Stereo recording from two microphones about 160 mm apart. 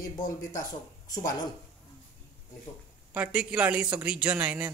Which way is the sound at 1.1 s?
25° left (ahead or behind).